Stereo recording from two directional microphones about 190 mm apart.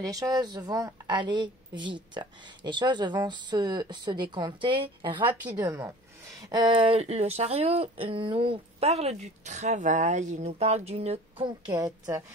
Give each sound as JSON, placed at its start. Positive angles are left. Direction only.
{"t": 0.0, "sound": "a woman's voice", "side_deg": -20}
{"t": 5.3, "sound": "a woman's voice", "side_deg": -10}